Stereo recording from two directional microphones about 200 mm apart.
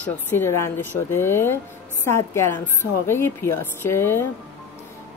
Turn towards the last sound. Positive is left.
turn(degrees=10)  # may be behind; listen again after turning